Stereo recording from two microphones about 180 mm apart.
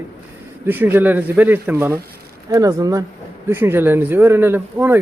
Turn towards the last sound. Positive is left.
turn(degrees=-10)  # may be behind; listen again after turning